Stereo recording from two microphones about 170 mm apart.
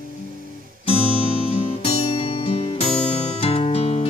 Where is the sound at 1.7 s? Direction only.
35° left (ahead or behind).